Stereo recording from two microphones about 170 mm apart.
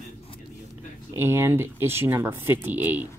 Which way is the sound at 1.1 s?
15° right (ahead or behind).